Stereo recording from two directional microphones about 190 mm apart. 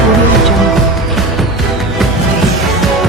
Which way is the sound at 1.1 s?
Centre (ahead or behind).